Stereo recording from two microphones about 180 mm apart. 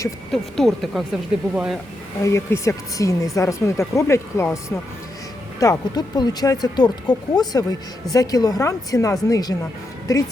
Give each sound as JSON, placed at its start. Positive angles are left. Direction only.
{"t": 0.3, "sound": "speech", "side_deg": 0}
{"t": 2.2, "sound": "speech", "side_deg": 15}